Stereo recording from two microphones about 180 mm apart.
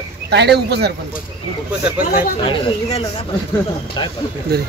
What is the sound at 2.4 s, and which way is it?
Speech, 30° left (ahead or behind).